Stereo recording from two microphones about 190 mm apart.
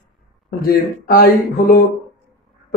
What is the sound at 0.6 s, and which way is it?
A man's voice, 50° left (ahead or behind).